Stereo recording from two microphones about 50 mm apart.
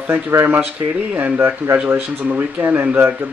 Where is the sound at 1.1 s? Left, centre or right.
Right.